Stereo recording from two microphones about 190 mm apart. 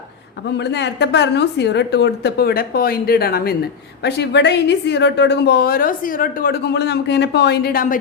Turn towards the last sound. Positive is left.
turn(degrees=50)  # may be behind; listen again after turning